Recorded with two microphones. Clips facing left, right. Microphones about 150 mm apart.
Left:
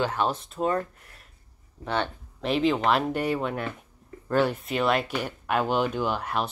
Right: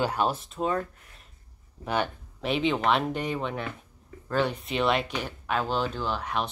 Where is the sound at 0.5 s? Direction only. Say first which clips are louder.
Left 2 dB; centre (ahead or behind).